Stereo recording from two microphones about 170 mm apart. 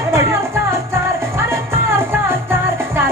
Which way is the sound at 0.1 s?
15° right (ahead or behind).